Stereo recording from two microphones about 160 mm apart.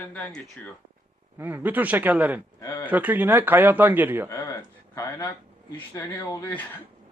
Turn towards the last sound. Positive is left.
turn(degrees=10)  # may be behind; listen again after turning